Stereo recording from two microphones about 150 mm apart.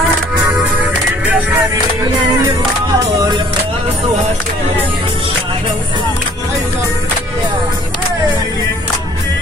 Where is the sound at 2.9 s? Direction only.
25° right (ahead or behind).